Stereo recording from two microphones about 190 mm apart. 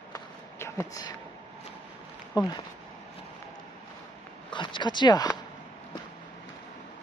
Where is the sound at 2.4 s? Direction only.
20° left (ahead or behind).